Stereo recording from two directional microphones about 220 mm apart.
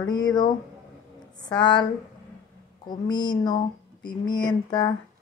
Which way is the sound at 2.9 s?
20° left (ahead or behind).